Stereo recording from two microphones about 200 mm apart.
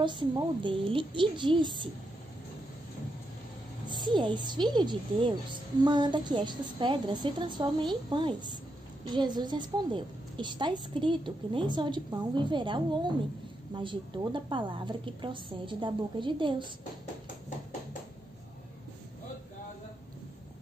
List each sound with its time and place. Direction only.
0.0 s a woman's voice: 25° right (ahead or behind)
3.9 s a woman's voice: 25° right (ahead or behind)